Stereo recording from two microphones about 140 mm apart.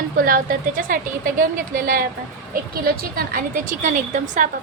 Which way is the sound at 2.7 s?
90° right.